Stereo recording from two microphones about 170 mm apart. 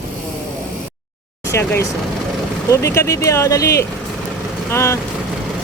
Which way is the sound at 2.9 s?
20° left (ahead or behind).